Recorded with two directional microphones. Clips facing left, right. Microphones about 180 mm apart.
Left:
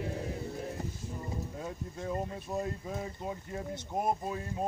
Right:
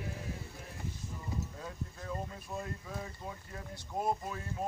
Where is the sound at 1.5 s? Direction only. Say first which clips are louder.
Left 5 dB; 25° left (ahead or behind).